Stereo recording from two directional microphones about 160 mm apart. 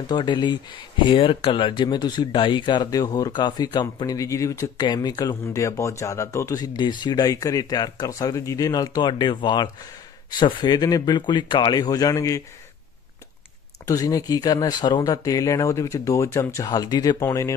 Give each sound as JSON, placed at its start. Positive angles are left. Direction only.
{"t": 0.0, "sound": "speech", "side_deg": 25}
{"t": 13.8, "sound": "speech", "side_deg": 20}